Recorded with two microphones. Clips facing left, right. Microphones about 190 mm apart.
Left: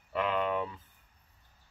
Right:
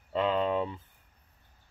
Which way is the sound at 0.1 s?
25° right (ahead or behind).